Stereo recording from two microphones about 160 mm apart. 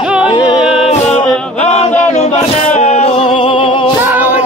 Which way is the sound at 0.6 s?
Centre (ahead or behind).